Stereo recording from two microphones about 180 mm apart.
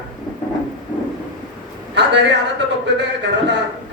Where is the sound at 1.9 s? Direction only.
75° right (ahead or behind).